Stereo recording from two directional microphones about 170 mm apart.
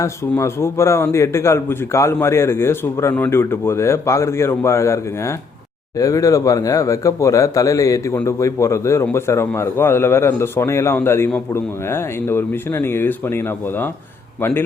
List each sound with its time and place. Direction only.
0.0 s speech: 15° left (ahead or behind)